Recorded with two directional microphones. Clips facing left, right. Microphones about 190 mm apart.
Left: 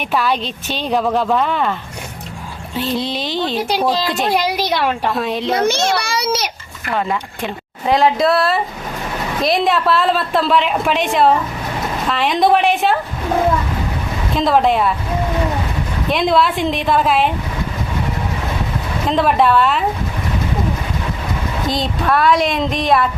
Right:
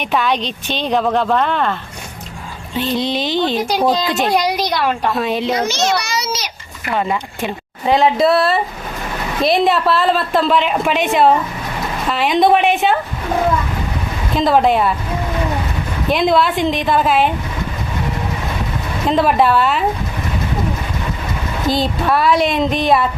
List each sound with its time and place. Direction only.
0.0 s a woman's voice: centre (ahead or behind)
2.7 s a woman's voice: centre (ahead or behind)
5.5 s a child's voice: 55° left (ahead or behind)
6.8 s a woman's voice: 10° right (ahead or behind)
14.3 s a woman's voice: centre (ahead or behind)
16.0 s a woman's voice: centre (ahead or behind)
19.0 s a woman's voice: centre (ahead or behind)
21.7 s a woman's voice: centre (ahead or behind)